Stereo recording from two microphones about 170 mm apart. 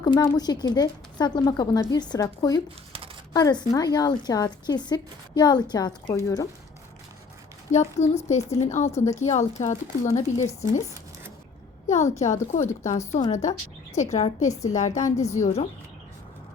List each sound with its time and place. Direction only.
0.0 s a woman's voice: 25° left (ahead or behind)
7.7 s a woman's voice: 40° left (ahead or behind)
11.9 s a woman's voice: 40° left (ahead or behind)